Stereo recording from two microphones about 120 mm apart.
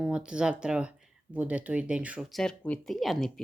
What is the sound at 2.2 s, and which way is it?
Speech, centre (ahead or behind).